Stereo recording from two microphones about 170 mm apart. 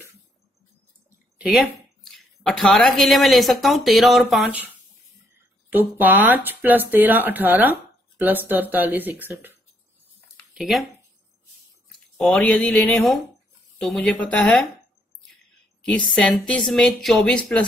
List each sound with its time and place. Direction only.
2.0 s speech: centre (ahead or behind)
10.5 s speech: centre (ahead or behind)
12.2 s speech: 5° left (ahead or behind)
15.8 s speech: 5° left (ahead or behind)